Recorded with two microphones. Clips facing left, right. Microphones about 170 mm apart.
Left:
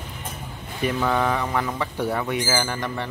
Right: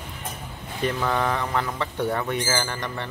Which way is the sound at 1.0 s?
5° left (ahead or behind).